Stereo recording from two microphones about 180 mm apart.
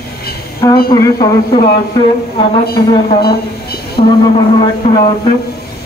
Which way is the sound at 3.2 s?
60° left (ahead or behind).